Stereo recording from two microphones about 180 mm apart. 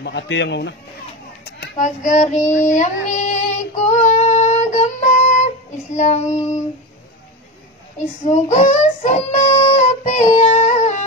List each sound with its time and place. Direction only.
0.0 s speech: 75° left (ahead or behind)
1.8 s child singing: 45° left (ahead or behind)
8.3 s music: 40° left (ahead or behind)